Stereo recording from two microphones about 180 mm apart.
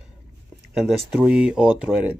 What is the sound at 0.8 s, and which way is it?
Speech, centre (ahead or behind).